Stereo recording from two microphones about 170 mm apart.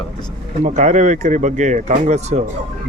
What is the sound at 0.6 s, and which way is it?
Speech, 45° right (ahead or behind).